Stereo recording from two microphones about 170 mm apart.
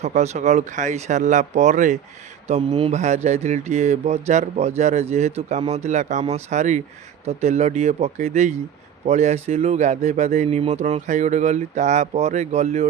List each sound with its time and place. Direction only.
0.0 s speech: 40° right (ahead or behind)
2.5 s speech: 35° right (ahead or behind)